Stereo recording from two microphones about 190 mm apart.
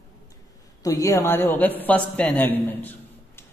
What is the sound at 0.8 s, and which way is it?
A man's voice, 15° left (ahead or behind).